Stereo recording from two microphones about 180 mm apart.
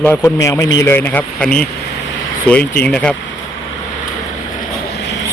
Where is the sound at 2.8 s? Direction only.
5° left (ahead or behind).